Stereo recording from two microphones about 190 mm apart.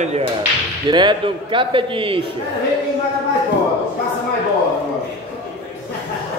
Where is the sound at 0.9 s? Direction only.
25° right (ahead or behind).